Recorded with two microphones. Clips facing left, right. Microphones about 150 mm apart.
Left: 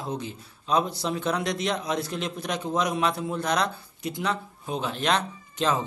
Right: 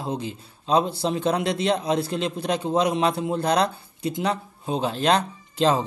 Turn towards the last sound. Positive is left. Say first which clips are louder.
# right 5 dB
turn(degrees=-30)  # may be behind; listen again after turning